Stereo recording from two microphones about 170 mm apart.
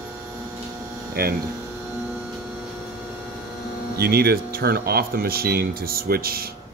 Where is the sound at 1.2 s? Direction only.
65° right (ahead or behind).